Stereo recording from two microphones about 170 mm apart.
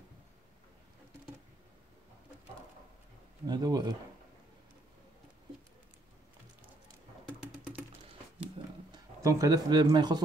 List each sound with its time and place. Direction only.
3.4 s speech: 25° right (ahead or behind)
7.2 s typing: 10° right (ahead or behind)
8.9 s speech: 20° right (ahead or behind)